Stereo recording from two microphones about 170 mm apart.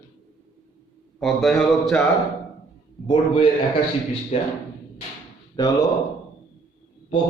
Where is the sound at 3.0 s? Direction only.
30° left (ahead or behind).